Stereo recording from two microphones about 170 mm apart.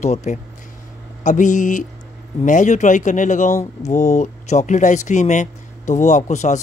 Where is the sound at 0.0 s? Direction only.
40° left (ahead or behind).